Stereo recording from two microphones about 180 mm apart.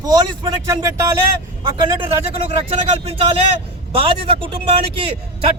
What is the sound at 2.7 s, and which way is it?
Speech, 35° right (ahead or behind).